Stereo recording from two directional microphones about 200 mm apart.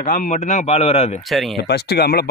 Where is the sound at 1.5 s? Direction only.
55° left (ahead or behind).